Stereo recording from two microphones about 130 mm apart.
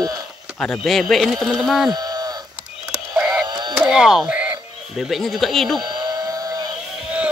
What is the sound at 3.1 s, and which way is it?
Sheep, 5° right (ahead or behind).